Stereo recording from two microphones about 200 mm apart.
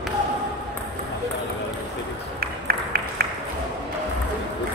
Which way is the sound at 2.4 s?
50° right (ahead or behind).